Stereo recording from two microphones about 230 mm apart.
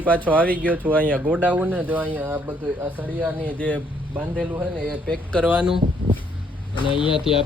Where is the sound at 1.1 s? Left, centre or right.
Centre.